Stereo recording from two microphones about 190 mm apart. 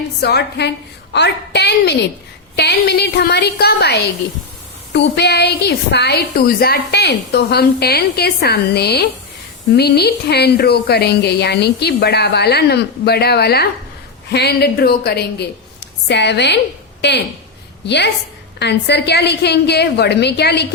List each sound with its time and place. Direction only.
0.2 s a woman's voice: 60° left (ahead or behind)